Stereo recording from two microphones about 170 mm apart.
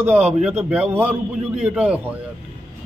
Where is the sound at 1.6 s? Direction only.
10° right (ahead or behind).